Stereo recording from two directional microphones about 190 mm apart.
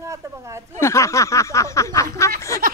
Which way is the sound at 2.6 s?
50° right (ahead or behind).